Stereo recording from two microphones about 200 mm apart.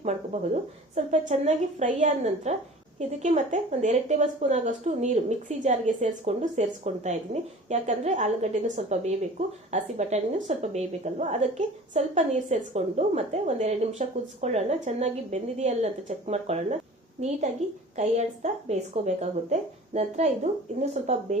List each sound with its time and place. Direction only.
0.0 s a woman's voice: 35° right (ahead or behind)